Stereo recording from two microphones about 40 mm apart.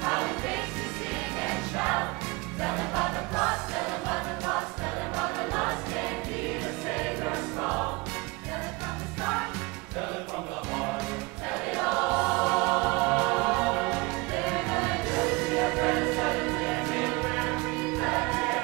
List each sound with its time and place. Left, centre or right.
0.0 s music: centre
2.6 s choir: centre
9.2 s music: centre
10.7 s music: centre